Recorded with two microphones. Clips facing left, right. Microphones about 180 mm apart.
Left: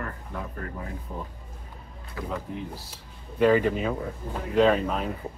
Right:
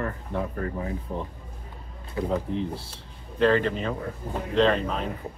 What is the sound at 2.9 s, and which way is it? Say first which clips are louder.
Speech: left 1 dB; 10° left (ahead or behind).